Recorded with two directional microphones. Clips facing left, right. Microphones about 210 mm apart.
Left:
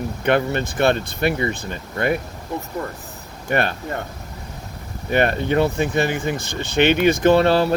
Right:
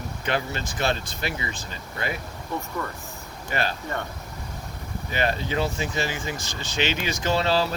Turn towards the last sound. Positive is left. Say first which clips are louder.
# left 8 dB
turn(degrees=55)  # may be behind; listen again after turning